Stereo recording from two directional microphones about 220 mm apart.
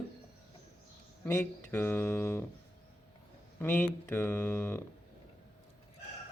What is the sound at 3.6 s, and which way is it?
Speech, 10° left (ahead or behind).